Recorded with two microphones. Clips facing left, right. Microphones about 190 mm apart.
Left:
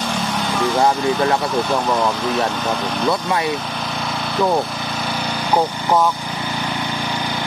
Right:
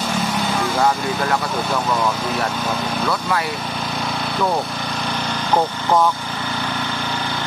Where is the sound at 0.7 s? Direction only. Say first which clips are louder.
Left 4 dB; 20° left (ahead or behind).